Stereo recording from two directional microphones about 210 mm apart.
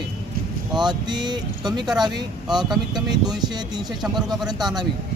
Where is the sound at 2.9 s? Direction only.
20° right (ahead or behind).